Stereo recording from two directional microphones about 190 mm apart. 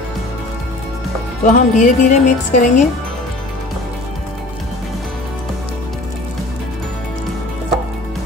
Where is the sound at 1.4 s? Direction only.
40° left (ahead or behind).